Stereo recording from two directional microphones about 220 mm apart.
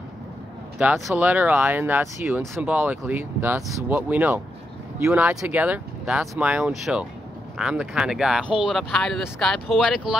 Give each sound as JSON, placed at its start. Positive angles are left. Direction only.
{"t": 0.7, "sound": "speech", "side_deg": -5}